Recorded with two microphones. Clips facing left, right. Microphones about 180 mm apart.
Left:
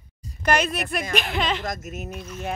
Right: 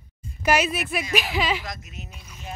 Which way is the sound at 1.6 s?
50° left (ahead or behind).